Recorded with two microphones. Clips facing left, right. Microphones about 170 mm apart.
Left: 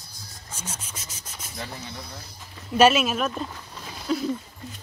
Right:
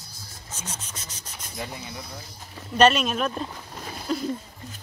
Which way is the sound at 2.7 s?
5° left (ahead or behind).